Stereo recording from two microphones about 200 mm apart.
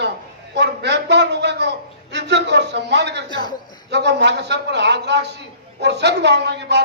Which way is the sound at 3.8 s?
60° right (ahead or behind).